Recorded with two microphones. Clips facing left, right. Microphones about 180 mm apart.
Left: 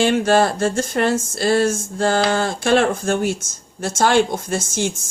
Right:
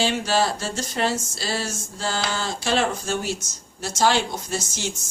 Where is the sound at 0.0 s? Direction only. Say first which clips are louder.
Left 7 dB; 55° left (ahead or behind).